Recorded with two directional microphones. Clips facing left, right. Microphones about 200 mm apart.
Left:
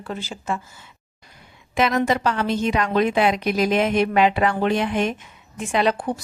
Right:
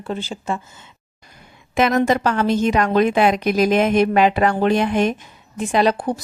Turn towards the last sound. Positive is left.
turn(degrees=-40)  # may be behind; listen again after turning